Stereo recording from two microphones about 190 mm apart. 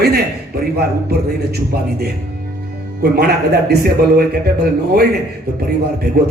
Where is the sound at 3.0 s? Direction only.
55° right (ahead or behind).